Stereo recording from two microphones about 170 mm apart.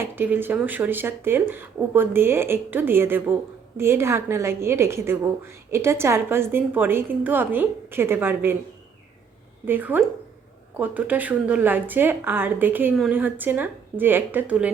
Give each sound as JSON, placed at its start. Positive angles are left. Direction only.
{"t": 0.0, "sound": "a woman's voice", "side_deg": -10}
{"t": 9.6, "sound": "a woman's voice", "side_deg": -10}